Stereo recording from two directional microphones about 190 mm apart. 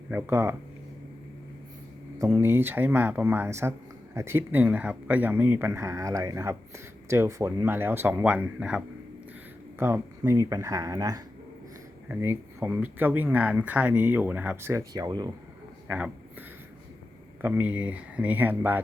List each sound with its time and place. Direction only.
0.1 s speech: 10° right (ahead or behind)
2.1 s speech: 15° right (ahead or behind)
15.9 s speech: 5° right (ahead or behind)
17.4 s speech: 10° right (ahead or behind)